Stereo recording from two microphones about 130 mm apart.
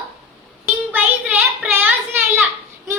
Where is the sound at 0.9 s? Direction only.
10° right (ahead or behind).